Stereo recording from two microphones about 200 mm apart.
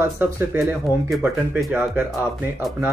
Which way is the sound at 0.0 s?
10° right (ahead or behind).